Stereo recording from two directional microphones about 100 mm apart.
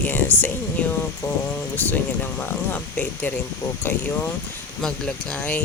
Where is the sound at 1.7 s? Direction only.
15° left (ahead or behind).